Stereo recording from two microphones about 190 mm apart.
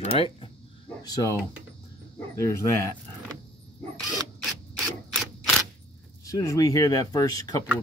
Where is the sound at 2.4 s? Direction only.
15° left (ahead or behind).